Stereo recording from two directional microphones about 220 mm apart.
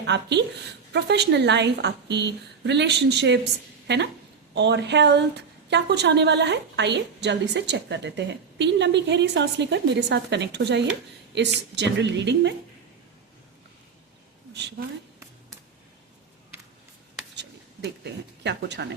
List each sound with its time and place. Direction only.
0.0 s a woman's voice: 50° right (ahead or behind)
18.0 s speech: 50° right (ahead or behind)